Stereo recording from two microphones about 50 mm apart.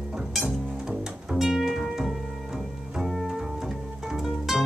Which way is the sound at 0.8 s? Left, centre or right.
Centre.